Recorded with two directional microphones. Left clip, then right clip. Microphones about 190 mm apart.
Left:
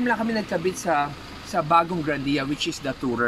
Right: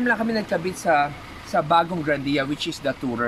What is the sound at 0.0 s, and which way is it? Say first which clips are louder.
Speech: right 2 dB; 15° right (ahead or behind).